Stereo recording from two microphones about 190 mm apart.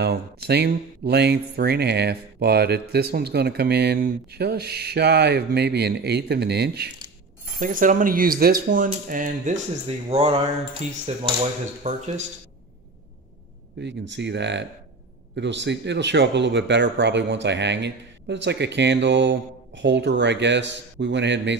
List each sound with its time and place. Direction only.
0.0 s speech: 60° right (ahead or behind)
7.5 s speech: 45° right (ahead or behind)
13.7 s speech: 65° right (ahead or behind)